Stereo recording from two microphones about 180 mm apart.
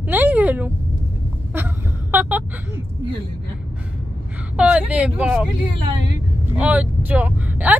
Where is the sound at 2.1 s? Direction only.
10° right (ahead or behind).